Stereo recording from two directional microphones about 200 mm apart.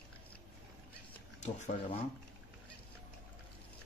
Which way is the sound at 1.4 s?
35° left (ahead or behind).